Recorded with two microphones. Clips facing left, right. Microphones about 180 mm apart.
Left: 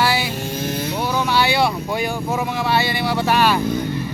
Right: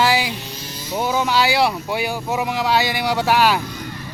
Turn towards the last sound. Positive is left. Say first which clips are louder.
# even
turn(degrees=-10)  # may be behind; listen again after turning